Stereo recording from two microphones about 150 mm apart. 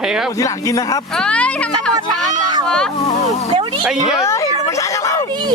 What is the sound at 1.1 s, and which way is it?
Speech, 5° left (ahead or behind).